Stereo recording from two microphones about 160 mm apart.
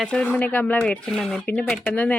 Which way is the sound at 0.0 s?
5° left (ahead or behind).